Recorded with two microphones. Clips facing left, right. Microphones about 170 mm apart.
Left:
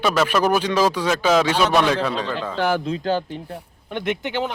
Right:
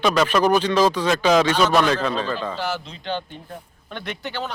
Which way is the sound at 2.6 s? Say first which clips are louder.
Left 7 dB; 55° left (ahead or behind).